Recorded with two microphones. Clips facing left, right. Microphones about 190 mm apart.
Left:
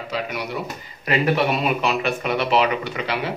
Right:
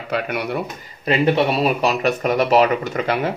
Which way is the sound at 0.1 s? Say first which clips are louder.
Right 5 dB; 60° right (ahead or behind).